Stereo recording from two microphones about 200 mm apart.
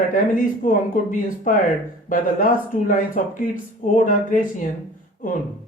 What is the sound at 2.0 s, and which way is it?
Speech, 40° left (ahead or behind).